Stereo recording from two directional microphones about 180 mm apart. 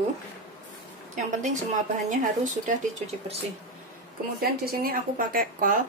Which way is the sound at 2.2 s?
45° right (ahead or behind).